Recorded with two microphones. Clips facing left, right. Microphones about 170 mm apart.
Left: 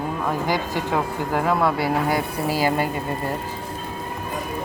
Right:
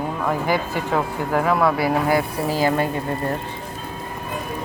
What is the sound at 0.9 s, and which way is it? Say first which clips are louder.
Speech: right 3 dB; 20° left (ahead or behind).